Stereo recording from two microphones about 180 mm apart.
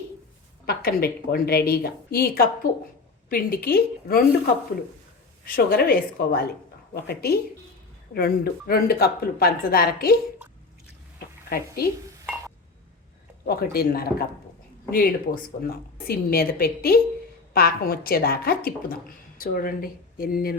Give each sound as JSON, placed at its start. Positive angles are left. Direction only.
{"t": 0.6, "sound": "a woman's voice", "side_deg": 60}
{"t": 5.5, "sound": "a woman's voice", "side_deg": 55}
{"t": 11.4, "sound": "speech", "side_deg": 60}
{"t": 13.4, "sound": "a woman's voice", "side_deg": 55}